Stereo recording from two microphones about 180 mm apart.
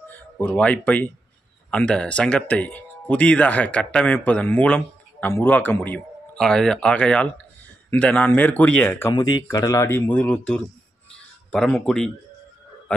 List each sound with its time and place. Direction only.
0.1 s speech: 10° left (ahead or behind)
9.5 s speech: 20° left (ahead or behind); by 12.1 s 5° left (ahead or behind)